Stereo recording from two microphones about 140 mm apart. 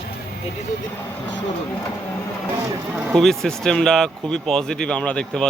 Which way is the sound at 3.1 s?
Centre (ahead or behind).